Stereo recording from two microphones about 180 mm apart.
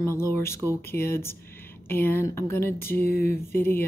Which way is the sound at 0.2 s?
15° left (ahead or behind).